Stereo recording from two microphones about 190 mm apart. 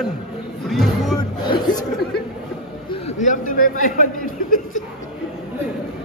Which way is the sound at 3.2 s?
45° left (ahead or behind).